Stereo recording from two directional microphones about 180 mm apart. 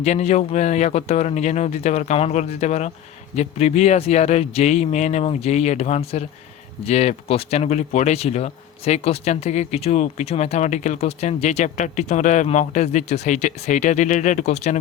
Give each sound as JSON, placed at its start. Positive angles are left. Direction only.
{"t": 0.0, "sound": "speech", "side_deg": 40}